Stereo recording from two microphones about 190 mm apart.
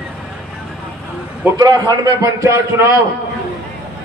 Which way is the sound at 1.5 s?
20° right (ahead or behind).